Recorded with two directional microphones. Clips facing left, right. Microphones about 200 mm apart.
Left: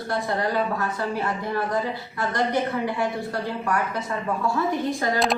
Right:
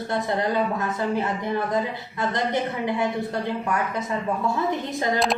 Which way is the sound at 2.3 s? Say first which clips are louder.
Left 3 dB; 20° right (ahead or behind).